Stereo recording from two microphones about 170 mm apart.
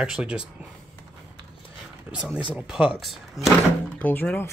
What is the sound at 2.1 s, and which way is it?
Speech, 5° right (ahead or behind).